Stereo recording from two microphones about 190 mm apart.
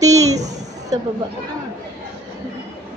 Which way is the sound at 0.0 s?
15° right (ahead or behind).